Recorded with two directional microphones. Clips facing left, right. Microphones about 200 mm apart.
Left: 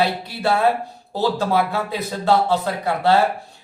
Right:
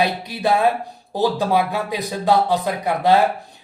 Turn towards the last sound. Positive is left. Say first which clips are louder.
# right 1 dB
turn(degrees=-15)  # may be behind; listen again after turning